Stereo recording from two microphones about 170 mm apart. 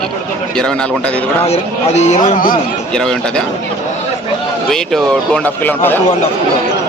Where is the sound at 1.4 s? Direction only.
40° left (ahead or behind).